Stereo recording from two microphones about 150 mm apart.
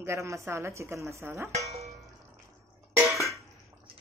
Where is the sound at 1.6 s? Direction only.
45° right (ahead or behind).